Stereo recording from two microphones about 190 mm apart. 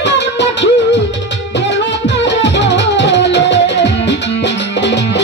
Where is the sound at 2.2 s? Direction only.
70° left (ahead or behind).